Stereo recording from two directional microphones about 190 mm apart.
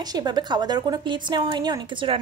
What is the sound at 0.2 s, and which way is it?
A woman's voice, 20° right (ahead or behind).